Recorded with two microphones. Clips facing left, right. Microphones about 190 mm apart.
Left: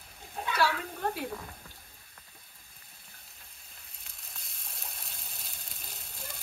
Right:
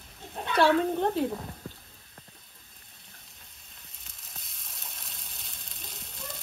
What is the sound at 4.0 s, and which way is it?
Sizzle, centre (ahead or behind).